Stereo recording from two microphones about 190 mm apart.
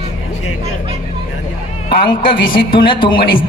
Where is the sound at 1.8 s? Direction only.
25° left (ahead or behind).